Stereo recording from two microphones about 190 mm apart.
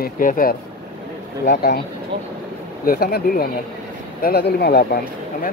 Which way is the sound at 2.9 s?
50° left (ahead or behind).